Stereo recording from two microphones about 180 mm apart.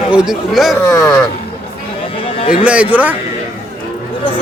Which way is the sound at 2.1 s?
30° left (ahead or behind).